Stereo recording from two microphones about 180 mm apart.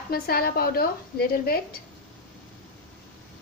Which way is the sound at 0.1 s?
60° left (ahead or behind).